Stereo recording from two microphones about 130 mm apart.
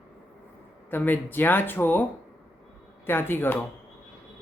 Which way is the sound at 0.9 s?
15° left (ahead or behind).